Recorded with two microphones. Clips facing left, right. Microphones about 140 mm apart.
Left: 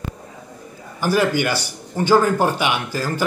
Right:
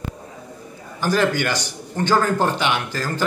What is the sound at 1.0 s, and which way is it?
Speech, 10° left (ahead or behind).